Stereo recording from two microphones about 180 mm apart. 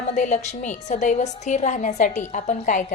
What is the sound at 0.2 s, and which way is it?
A woman's voice, 40° left (ahead or behind).